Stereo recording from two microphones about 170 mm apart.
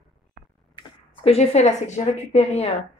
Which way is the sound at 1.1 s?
35° left (ahead or behind).